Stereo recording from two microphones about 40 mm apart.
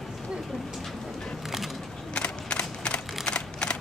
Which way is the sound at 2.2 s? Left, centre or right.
Left.